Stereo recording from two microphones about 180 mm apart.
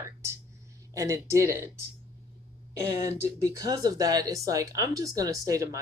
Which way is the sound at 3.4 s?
20° right (ahead or behind).